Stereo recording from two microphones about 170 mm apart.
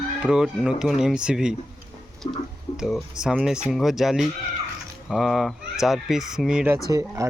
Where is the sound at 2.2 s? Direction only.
35° left (ahead or behind).